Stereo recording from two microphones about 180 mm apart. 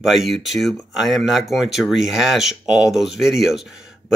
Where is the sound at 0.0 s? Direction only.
Centre (ahead or behind).